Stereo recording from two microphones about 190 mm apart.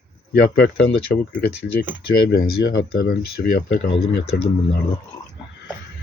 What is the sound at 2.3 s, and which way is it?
Speech, 60° left (ahead or behind).